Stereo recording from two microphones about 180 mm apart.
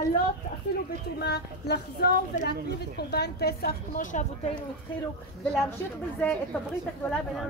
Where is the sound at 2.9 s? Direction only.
65° left (ahead or behind); by 4.2 s 45° left (ahead or behind).